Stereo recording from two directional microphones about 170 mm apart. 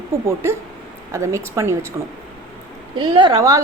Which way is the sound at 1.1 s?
15° right (ahead or behind).